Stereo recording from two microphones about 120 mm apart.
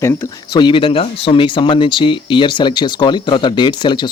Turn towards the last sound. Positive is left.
turn(degrees=40)  # may be behind; listen again after turning